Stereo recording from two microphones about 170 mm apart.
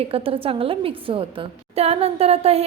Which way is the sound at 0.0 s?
35° right (ahead or behind).